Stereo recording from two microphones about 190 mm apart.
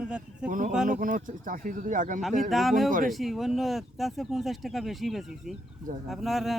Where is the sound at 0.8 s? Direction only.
45° right (ahead or behind).